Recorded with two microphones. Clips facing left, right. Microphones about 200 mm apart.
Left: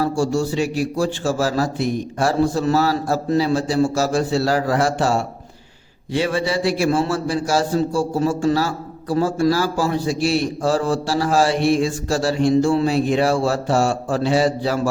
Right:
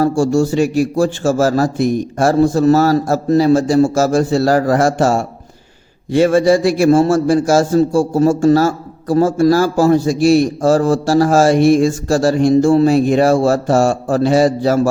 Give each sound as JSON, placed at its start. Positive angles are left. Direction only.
{"t": 0.0, "sound": "a man's voice", "side_deg": -45}